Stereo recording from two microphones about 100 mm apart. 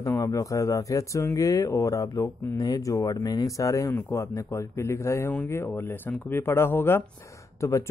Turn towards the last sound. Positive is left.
turn(degrees=30)  # may be behind; listen again after turning